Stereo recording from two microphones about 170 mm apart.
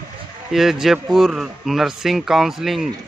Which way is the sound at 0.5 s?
Centre (ahead or behind).